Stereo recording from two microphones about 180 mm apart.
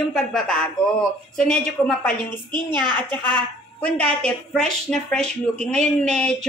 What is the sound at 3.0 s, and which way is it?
Speech, 25° right (ahead or behind).